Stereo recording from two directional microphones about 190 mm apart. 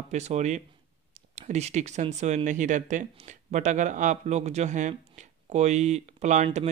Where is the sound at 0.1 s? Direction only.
35° right (ahead or behind).